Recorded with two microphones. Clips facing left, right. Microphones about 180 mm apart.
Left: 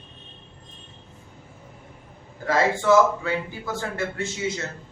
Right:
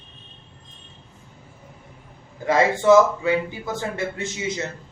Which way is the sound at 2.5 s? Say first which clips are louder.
Right 4 dB; 20° right (ahead or behind).